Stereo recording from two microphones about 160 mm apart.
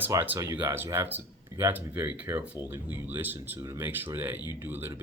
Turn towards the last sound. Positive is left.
turn(degrees=-15)  # may be behind; listen again after turning